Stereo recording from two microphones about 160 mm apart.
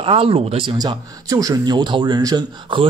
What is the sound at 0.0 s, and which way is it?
Speech, 35° right (ahead or behind).